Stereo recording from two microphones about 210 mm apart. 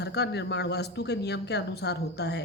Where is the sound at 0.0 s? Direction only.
50° left (ahead or behind).